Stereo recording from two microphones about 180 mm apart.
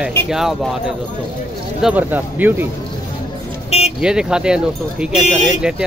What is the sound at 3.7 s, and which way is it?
Vehicle, 35° left (ahead or behind).